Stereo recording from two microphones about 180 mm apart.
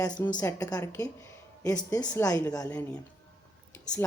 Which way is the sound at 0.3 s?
15° left (ahead or behind).